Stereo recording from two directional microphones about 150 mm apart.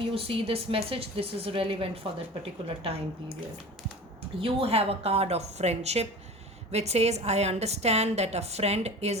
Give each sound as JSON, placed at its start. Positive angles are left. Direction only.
{"t": 0.1, "sound": "speech", "side_deg": -40}
{"t": 4.4, "sound": "a woman's voice", "side_deg": -40}